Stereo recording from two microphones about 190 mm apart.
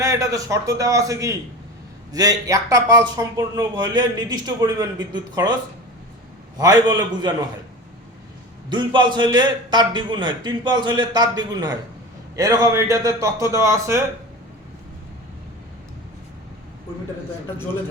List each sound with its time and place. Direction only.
0.0 s a man's voice: 15° right (ahead or behind)
6.6 s speech: 20° right (ahead or behind)
8.7 s a man's voice: 25° right (ahead or behind)